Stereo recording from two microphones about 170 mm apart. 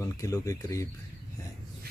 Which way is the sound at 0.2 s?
20° left (ahead or behind).